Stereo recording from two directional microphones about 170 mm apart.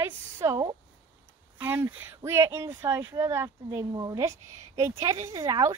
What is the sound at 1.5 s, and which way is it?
Speech, 15° right (ahead or behind).